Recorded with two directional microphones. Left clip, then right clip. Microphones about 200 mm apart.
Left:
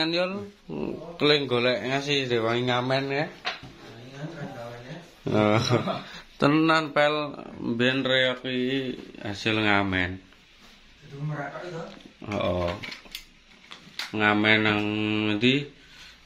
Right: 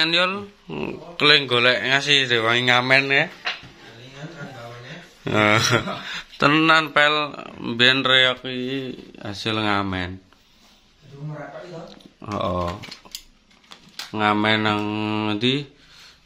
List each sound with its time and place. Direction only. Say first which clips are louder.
0.0 s speech: right 7 dB; 5° right (ahead or behind)
5.2 s speech: right 5 dB; 5° right (ahead or behind)
7.7 s speech: right 7 dB; 15° right (ahead or behind)
12.2 s speech: right 3 dB; 25° right (ahead or behind)
12.8 s cutlery: even; 55° right (ahead or behind)
14.1 s speech: right 2 dB; 25° right (ahead or behind)